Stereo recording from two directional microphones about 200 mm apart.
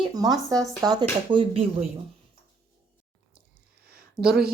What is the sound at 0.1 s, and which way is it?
Speech, 20° right (ahead or behind).